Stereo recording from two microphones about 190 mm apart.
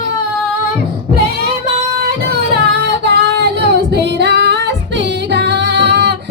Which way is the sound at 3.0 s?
65° right (ahead or behind).